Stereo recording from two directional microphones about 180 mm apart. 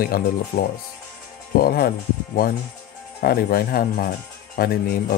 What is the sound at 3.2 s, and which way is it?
Speech, 55° left (ahead or behind).